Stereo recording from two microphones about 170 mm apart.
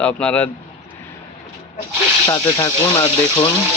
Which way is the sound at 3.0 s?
35° left (ahead or behind).